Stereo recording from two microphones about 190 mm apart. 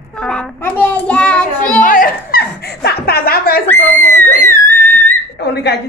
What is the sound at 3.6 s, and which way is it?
Screaming, 10° left (ahead or behind).